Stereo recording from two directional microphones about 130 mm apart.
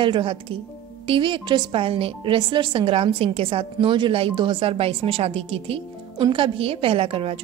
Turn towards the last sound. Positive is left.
turn(degrees=-50)  # may be behind; listen again after turning